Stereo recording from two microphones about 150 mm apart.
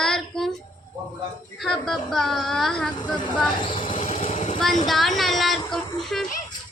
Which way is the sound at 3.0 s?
30° left (ahead or behind).